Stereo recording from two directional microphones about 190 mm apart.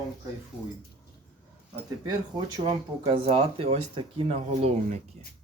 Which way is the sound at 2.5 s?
25° right (ahead or behind).